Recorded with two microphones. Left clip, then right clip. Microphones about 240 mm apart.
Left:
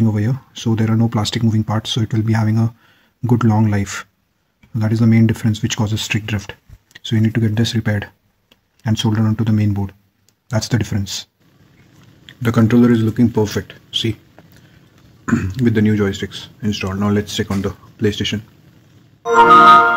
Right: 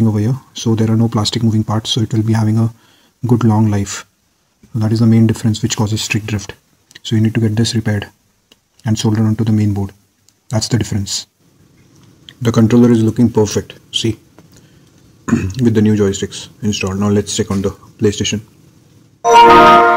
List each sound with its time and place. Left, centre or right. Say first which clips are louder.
0.0 s speech: right 3 dB; centre
12.3 s speech: right 3 dB; centre
15.2 s speech: right 3 dB; centre